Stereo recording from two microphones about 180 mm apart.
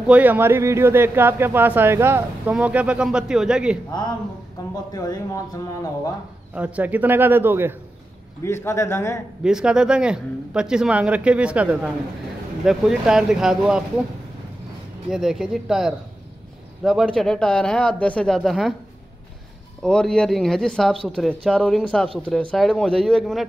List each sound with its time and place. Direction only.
0.0 s speech: 10° right (ahead or behind)
4.9 s speech: 20° left (ahead or behind)
6.5 s speech: 10° right (ahead or behind)
8.4 s a man's voice: 15° left (ahead or behind)
9.4 s speech: 5° right (ahead or behind)
15.0 s speech: centre (ahead or behind)
19.8 s speech: 5° left (ahead or behind)